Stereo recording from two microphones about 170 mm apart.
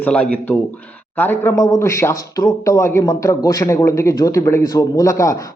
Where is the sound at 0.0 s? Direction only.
5° left (ahead or behind).